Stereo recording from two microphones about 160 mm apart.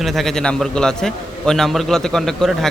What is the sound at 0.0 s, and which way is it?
A man's voice, centre (ahead or behind).